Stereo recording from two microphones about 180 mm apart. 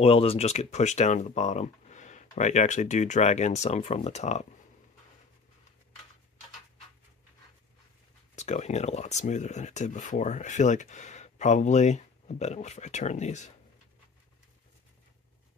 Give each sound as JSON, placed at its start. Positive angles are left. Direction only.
{"t": 0.0, "sound": "speech", "side_deg": 30}
{"t": 8.4, "sound": "speech", "side_deg": 40}